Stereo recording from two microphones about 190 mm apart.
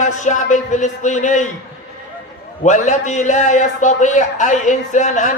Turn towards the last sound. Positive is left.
turn(degrees=40)  # may be behind; listen again after turning